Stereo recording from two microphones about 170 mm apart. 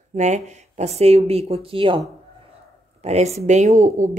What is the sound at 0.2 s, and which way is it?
Speech, 40° right (ahead or behind).